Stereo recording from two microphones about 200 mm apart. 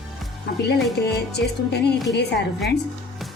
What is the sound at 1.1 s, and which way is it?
Music, 55° left (ahead or behind).